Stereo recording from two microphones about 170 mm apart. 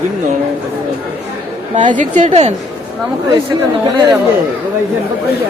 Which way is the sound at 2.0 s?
45° right (ahead or behind).